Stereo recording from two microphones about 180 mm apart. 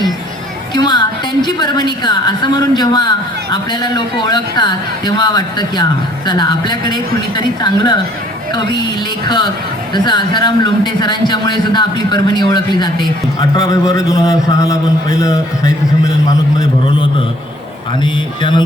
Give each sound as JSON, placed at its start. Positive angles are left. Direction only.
{"t": 0.7, "sound": "a man's voice", "side_deg": 25}
{"t": 9.2, "sound": "a man's voice", "side_deg": 25}